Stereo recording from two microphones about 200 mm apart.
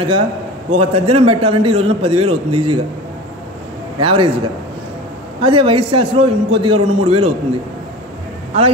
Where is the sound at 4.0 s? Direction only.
25° right (ahead or behind).